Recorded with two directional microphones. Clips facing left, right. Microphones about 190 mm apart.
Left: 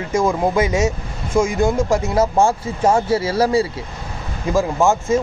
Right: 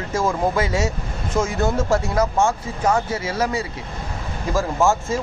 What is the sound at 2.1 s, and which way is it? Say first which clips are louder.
Speech: left 3 dB; 30° left (ahead or behind).